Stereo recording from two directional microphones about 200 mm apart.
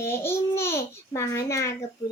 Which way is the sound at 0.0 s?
10° left (ahead or behind).